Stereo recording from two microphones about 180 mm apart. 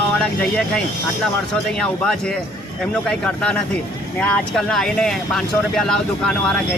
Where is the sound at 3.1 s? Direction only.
5° left (ahead or behind).